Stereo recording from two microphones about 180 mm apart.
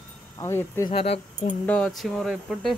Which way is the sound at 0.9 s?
35° left (ahead or behind).